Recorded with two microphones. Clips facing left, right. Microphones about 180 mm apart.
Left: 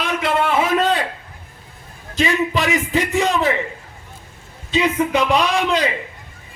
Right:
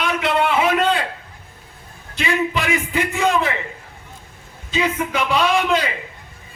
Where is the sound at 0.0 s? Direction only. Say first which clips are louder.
Even; 40° left (ahead or behind).